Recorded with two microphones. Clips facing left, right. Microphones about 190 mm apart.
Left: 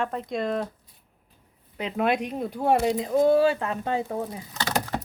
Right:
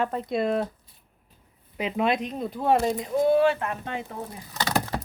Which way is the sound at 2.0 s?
5° left (ahead or behind).